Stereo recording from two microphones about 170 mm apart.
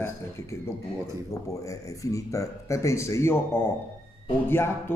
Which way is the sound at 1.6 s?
20° left (ahead or behind).